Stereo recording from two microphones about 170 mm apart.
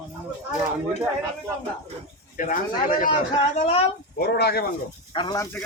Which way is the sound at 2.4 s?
50° left (ahead or behind).